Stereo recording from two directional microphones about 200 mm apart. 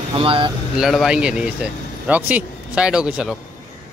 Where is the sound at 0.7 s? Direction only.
Centre (ahead or behind).